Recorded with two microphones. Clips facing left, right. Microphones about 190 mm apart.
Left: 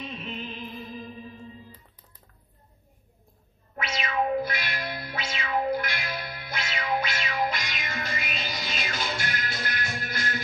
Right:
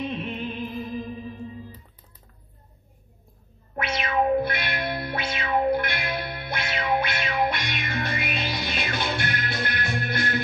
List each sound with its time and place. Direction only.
0.0 s music: 55° right (ahead or behind)
3.7 s music: 55° right (ahead or behind)